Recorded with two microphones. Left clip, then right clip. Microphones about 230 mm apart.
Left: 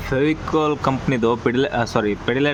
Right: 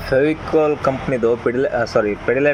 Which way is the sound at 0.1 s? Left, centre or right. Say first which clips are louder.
Right 4 dB; left.